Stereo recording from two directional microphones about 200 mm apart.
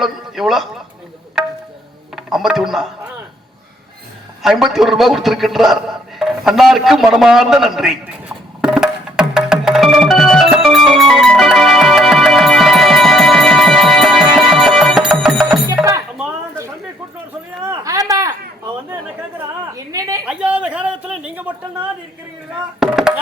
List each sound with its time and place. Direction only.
0.0 s a man's voice: centre (ahead or behind)
2.1 s speech: centre (ahead or behind)
4.4 s a man's voice: centre (ahead or behind)
8.6 s music: 5° right (ahead or behind)
15.8 s music: 15° right (ahead or behind)
16.1 s a sound: 10° right (ahead or behind)
19.7 s a sound: 15° right (ahead or behind)
20.2 s speech: 5° right (ahead or behind)
22.8 s a man's voice: 5° right (ahead or behind)